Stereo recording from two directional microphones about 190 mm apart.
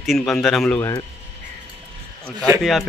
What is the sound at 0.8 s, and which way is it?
Speech, 20° left (ahead or behind).